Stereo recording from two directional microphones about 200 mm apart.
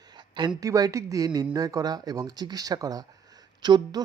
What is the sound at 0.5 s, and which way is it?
Speech, 15° right (ahead or behind).